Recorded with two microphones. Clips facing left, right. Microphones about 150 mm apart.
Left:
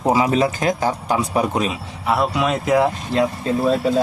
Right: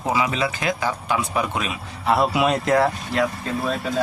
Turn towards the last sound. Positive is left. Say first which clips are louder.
# left 7 dB
turn(degrees=30)  # may be behind; listen again after turning